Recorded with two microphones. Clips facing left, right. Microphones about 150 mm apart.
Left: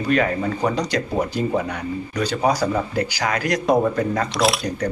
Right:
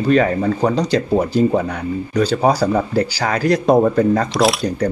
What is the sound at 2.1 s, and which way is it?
Speech, 30° right (ahead or behind).